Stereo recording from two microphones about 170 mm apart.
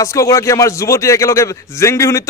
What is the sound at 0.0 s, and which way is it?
A man's voice, 20° left (ahead or behind).